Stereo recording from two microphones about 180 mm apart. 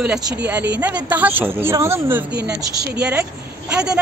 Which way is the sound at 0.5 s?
10° right (ahead or behind).